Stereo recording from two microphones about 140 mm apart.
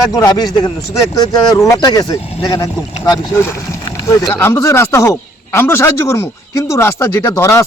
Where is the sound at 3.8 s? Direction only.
20° left (ahead or behind).